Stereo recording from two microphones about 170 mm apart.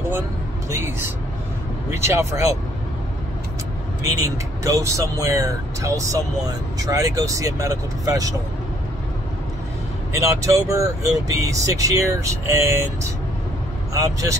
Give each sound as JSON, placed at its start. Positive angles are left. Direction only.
{"t": 0.7, "sound": "speech", "side_deg": -15}
{"t": 4.6, "sound": "speech", "side_deg": -20}
{"t": 10.1, "sound": "speech", "side_deg": -20}